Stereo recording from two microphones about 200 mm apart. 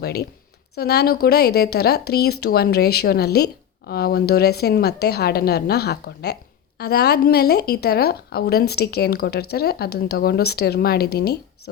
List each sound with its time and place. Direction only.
0.0 s speech: 55° left (ahead or behind)